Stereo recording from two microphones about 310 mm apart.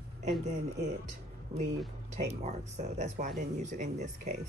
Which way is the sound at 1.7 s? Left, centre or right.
Right.